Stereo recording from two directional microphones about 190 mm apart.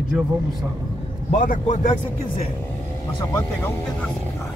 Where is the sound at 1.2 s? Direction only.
40° left (ahead or behind).